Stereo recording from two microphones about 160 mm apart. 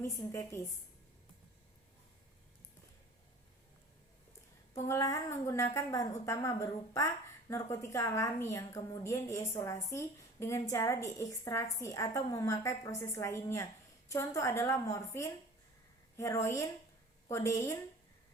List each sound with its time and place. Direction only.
0.0 s a woman's voice: 20° left (ahead or behind)
4.7 s a woman's voice: 20° left (ahead or behind)